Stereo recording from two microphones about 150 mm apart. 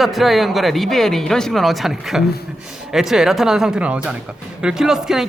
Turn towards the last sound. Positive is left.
turn(degrees=-5)  # may be behind; listen again after turning